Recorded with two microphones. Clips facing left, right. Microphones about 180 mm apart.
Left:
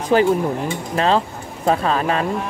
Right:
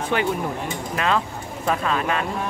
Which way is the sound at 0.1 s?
35° left (ahead or behind).